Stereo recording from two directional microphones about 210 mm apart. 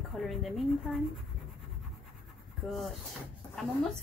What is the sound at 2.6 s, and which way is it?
Speech, centre (ahead or behind).